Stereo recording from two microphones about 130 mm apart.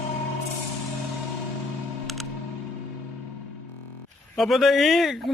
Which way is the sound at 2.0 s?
Centre (ahead or behind).